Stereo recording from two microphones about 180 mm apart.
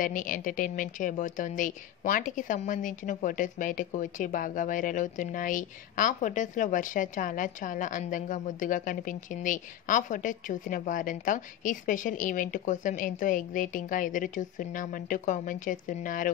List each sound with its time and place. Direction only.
0.0 s speech: 45° left (ahead or behind)